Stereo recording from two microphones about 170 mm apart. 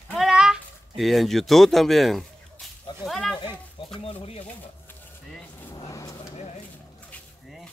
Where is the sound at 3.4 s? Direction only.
30° left (ahead or behind).